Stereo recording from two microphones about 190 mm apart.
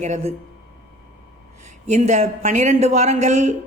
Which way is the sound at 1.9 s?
35° right (ahead or behind).